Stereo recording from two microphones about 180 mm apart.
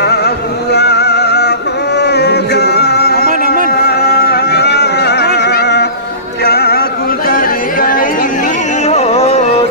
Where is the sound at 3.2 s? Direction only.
50° right (ahead or behind).